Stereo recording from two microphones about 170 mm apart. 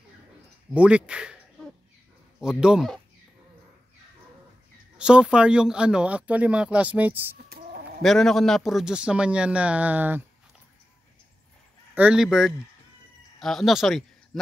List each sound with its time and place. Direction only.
0.7 s speech: 5° right (ahead or behind)
4.9 s speech: 5° right (ahead or behind)
7.3 s chicken: 65° right (ahead or behind)
8.0 s speech: centre (ahead or behind)
11.9 s speech: 10° right (ahead or behind)